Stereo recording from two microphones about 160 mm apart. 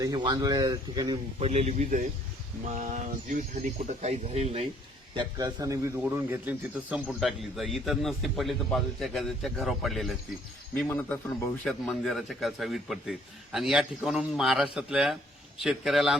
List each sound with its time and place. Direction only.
0.0 s speech: 25° right (ahead or behind); by 4.6 s 40° right (ahead or behind)
5.1 s a man's voice: 30° right (ahead or behind); by 16.1 s centre (ahead or behind)